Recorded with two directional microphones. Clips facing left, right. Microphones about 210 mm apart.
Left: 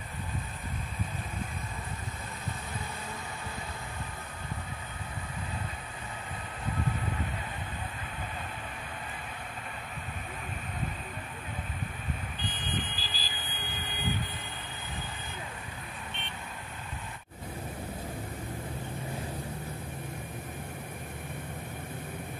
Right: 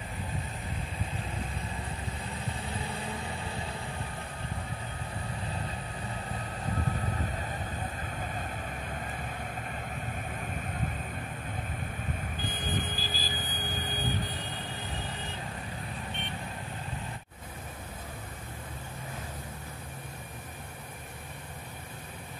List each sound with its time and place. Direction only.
12.4 s vehicle: 45° right (ahead or behind)